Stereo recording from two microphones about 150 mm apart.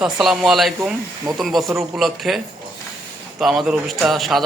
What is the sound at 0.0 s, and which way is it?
Speech, 5° right (ahead or behind).